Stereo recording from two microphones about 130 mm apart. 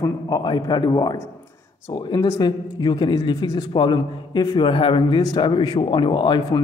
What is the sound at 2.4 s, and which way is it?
A man's voice, 35° left (ahead or behind).